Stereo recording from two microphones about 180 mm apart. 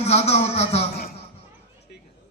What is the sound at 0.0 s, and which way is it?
Speech, 35° left (ahead or behind).